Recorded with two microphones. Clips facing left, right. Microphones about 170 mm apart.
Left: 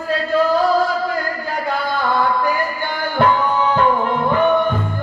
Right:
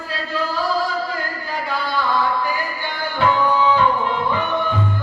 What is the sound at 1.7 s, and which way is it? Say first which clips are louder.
Music: left 2 dB; 50° left (ahead or behind).